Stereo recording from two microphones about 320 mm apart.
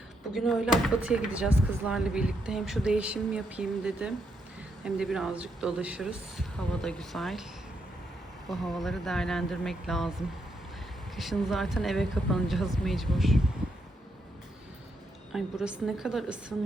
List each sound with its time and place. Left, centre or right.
0.3 s speech: centre
8.4 s speech: centre
11.2 s speech: centre
15.3 s speech: centre